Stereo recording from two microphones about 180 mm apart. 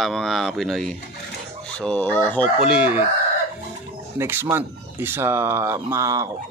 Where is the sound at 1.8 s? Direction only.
5° left (ahead or behind).